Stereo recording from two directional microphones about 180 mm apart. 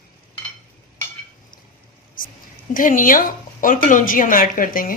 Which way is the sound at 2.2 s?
50° left (ahead or behind).